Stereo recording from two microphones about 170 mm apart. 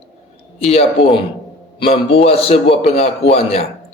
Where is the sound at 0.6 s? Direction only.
35° left (ahead or behind).